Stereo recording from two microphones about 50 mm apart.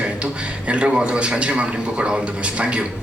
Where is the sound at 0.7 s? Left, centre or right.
Right.